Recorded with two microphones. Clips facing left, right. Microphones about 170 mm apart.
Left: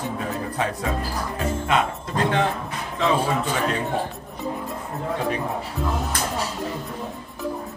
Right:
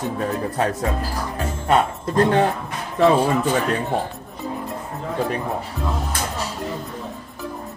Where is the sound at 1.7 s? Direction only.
40° right (ahead or behind).